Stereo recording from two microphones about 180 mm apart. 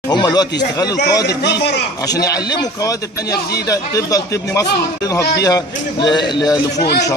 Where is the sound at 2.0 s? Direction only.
20° left (ahead or behind).